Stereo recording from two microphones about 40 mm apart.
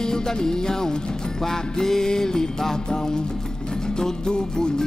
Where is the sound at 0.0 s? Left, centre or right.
Centre.